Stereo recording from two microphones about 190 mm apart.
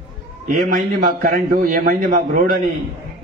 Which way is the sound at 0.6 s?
50° right (ahead or behind).